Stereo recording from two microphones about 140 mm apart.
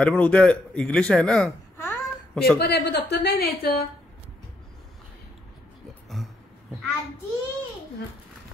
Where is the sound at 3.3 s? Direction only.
90° left.